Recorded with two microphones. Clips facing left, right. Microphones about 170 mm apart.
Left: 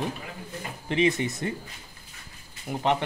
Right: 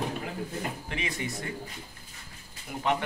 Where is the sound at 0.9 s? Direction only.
25° left (ahead or behind).